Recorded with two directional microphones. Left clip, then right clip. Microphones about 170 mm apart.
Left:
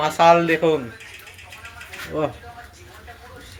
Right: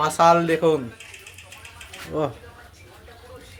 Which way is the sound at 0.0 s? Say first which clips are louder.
Left 2 dB; 20° right (ahead or behind).